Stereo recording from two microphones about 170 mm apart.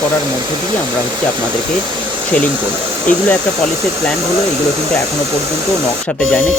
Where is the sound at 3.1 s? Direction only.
50° left (ahead or behind).